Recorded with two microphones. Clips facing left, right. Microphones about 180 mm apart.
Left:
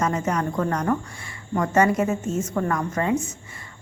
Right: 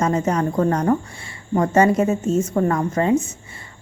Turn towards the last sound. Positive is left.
turn(degrees=-30)  # may be behind; listen again after turning